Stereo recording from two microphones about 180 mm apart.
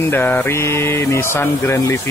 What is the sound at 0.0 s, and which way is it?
Speech, 10° left (ahead or behind).